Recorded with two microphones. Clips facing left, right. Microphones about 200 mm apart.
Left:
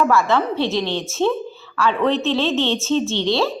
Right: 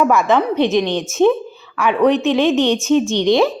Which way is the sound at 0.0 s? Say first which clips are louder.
Right 3 dB; 15° right (ahead or behind).